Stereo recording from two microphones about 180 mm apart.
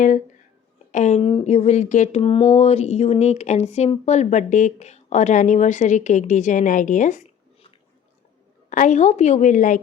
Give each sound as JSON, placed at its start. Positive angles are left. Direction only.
{"t": 0.9, "sound": "speech", "side_deg": 40}
{"t": 2.2, "sound": "speech", "side_deg": 35}
{"t": 8.7, "sound": "a woman's voice", "side_deg": 45}